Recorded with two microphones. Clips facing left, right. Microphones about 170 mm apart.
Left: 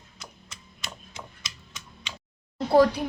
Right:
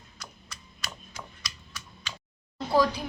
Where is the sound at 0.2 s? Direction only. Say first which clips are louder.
Left 1 dB; 25° left (ahead or behind).